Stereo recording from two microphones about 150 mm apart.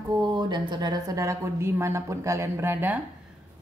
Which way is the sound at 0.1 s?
30° right (ahead or behind).